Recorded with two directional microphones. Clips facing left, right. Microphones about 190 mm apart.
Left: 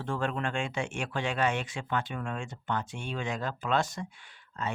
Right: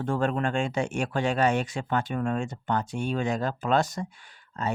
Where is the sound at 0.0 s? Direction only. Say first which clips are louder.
Right 6 dB; 45° right (ahead or behind).